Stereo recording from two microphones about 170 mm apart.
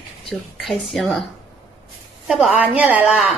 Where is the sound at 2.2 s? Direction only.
Centre (ahead or behind).